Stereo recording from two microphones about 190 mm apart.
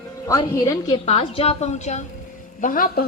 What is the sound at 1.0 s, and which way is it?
A woman's voice, 30° left (ahead or behind).